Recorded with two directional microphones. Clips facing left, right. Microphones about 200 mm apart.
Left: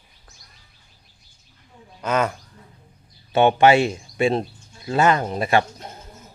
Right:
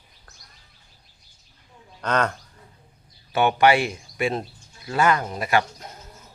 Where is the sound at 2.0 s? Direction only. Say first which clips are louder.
Left 2 dB; 5° left (ahead or behind).